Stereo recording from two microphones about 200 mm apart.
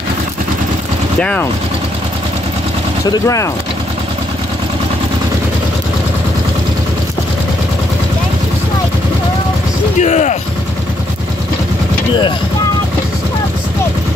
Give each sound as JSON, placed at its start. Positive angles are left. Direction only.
{"t": 1.2, "sound": "speech", "side_deg": 5}
{"t": 3.1, "sound": "speech", "side_deg": 15}
{"t": 9.9, "sound": "speech", "side_deg": 35}